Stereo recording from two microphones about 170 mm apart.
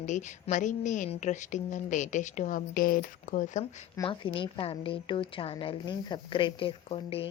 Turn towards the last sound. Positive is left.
turn(degrees=35)  # may be behind; listen again after turning